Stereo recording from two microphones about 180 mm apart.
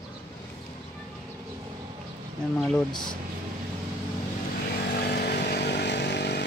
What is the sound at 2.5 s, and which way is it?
Speech, 5° left (ahead or behind).